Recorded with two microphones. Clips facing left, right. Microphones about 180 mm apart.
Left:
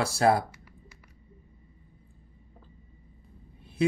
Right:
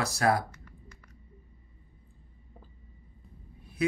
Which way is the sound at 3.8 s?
25° left (ahead or behind).